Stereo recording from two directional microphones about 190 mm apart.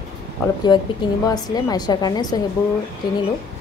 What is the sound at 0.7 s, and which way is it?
A woman's voice, 20° left (ahead or behind).